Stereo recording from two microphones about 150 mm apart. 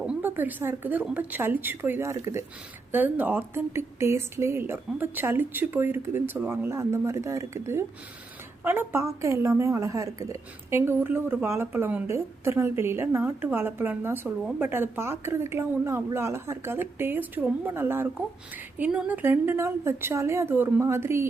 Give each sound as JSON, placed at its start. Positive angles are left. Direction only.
{"t": 0.0, "sound": "a woman's voice", "side_deg": -10}